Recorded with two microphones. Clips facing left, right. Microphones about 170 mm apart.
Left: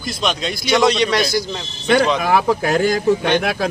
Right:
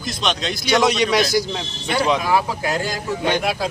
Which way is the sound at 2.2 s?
60° left (ahead or behind).